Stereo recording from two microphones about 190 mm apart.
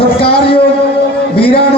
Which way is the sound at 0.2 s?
30° left (ahead or behind).